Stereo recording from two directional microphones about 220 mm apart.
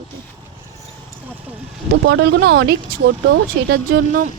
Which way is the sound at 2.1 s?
50° right (ahead or behind).